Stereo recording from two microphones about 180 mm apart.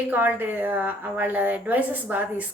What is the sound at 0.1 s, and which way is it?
Speech, 10° right (ahead or behind).